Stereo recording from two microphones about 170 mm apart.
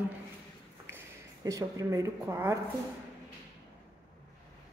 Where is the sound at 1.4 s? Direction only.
20° right (ahead or behind).